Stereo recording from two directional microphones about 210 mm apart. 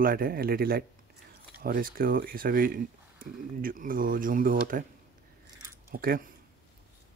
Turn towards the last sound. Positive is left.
turn(degrees=-45)  # may be behind; listen again after turning